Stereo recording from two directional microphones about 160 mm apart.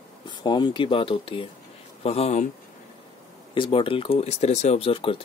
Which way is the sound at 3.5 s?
35° left (ahead or behind).